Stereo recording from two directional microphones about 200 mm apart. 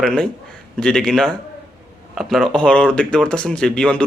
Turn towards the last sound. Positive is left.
turn(degrees=5)  # may be behind; listen again after turning